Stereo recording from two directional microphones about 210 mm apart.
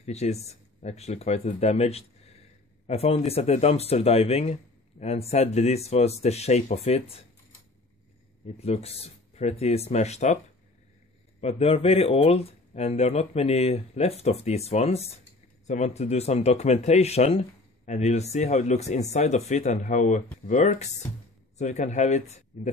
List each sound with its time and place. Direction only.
0.0 s a man's voice: 30° left (ahead or behind)
8.5 s speech: 30° left (ahead or behind)
11.4 s a man's voice: 30° left (ahead or behind)